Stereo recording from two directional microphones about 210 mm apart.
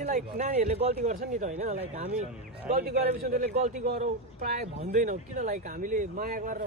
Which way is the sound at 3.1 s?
35° right (ahead or behind).